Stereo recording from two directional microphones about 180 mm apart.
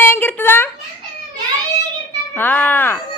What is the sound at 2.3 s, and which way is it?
Speech, 10° left (ahead or behind).